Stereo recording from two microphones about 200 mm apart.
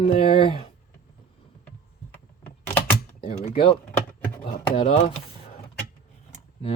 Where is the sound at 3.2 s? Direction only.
30° left (ahead or behind).